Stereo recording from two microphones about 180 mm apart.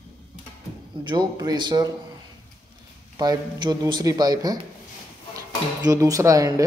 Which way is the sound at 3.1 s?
20° right (ahead or behind).